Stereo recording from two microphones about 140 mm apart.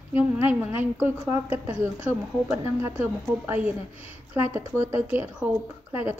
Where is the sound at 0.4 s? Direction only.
15° right (ahead or behind).